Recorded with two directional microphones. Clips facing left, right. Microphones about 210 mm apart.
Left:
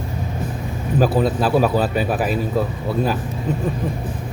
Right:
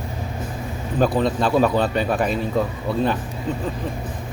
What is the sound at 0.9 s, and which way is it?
Speech, 5° left (ahead or behind).